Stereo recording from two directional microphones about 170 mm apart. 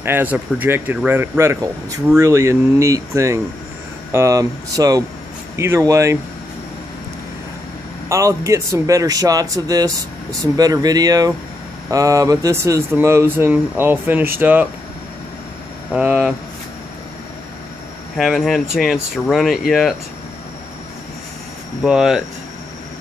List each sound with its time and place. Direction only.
0.0 s speech: 10° right (ahead or behind)
8.1 s speech: 20° right (ahead or behind)
15.9 s speech: 5° right (ahead or behind)
18.1 s speech: centre (ahead or behind)
21.8 s speech: 5° right (ahead or behind)